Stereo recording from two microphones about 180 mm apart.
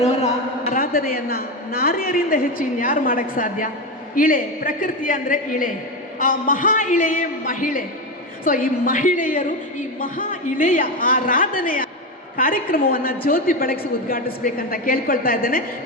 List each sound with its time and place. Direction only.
0.6 s a woman's voice: 55° left (ahead or behind)